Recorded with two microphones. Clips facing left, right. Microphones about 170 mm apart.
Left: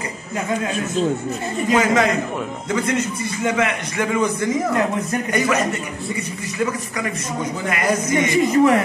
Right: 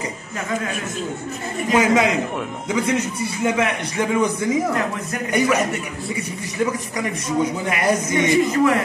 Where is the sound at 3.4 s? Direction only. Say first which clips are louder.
Even; 10° right (ahead or behind).